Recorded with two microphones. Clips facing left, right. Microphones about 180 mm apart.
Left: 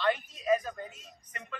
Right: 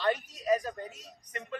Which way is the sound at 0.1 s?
40° right (ahead or behind).